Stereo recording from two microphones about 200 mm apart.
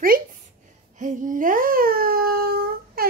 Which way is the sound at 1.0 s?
40° right (ahead or behind).